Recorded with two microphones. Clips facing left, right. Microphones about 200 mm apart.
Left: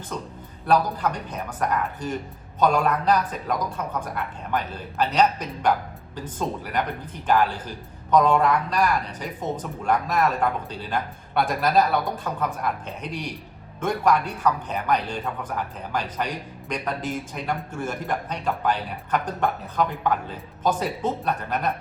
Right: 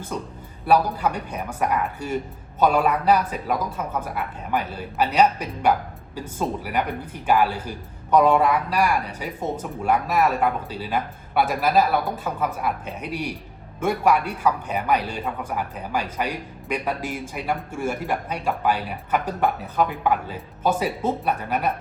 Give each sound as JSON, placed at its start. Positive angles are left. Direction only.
{"t": 0.1, "sound": "speech", "side_deg": -10}
{"t": 7.3, "sound": "speech", "side_deg": -10}